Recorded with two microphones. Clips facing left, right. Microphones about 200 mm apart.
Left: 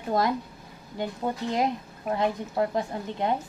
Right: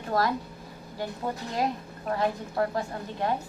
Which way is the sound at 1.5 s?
20° left (ahead or behind).